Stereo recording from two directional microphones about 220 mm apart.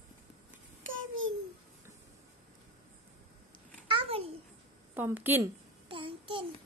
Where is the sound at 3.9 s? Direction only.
25° right (ahead or behind).